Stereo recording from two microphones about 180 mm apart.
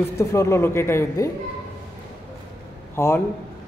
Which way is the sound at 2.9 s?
15° left (ahead or behind).